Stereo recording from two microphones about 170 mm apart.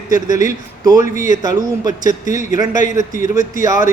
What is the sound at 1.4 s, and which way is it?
Speech, 25° right (ahead or behind).